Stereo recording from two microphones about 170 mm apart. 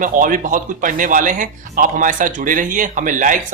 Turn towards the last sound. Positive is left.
turn(degrees=-50)  # may be behind; listen again after turning